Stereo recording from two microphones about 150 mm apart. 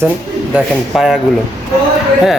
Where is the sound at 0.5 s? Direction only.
5° right (ahead or behind).